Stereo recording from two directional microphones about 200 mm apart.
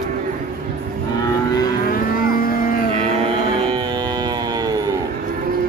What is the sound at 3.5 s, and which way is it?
Music, 25° right (ahead or behind).